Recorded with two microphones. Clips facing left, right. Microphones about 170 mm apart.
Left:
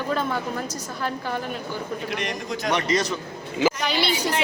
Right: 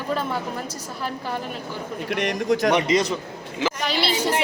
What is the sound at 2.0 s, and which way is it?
Speech, 60° right (ahead or behind).